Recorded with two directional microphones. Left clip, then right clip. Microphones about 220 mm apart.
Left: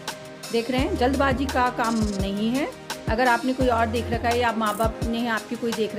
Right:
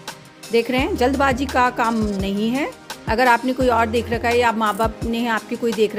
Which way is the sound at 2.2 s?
30° right (ahead or behind).